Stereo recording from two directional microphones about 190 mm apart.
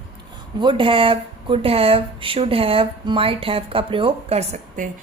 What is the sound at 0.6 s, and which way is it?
A woman's voice, 25° right (ahead or behind).